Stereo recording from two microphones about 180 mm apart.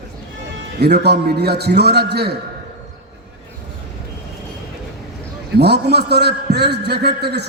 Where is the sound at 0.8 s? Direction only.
65° right (ahead or behind).